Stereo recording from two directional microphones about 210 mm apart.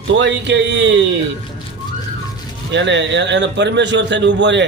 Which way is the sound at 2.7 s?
60° right (ahead or behind).